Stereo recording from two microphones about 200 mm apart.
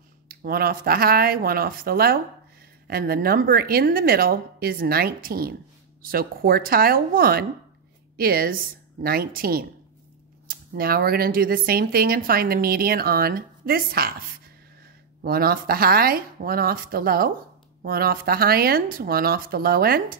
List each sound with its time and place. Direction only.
0.3 s speech: 45° right (ahead or behind)
15.2 s speech: 50° right (ahead or behind)